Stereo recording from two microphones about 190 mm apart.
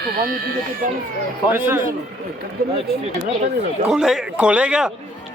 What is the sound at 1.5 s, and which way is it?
Speech, 10° right (ahead or behind).